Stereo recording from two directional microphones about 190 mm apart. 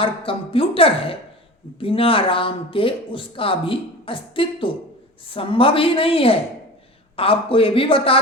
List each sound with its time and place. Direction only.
0.0 s speech: 30° left (ahead or behind)